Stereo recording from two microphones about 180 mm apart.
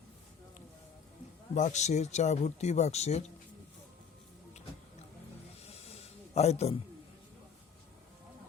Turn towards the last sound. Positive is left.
turn(degrees=35)  # may be behind; listen again after turning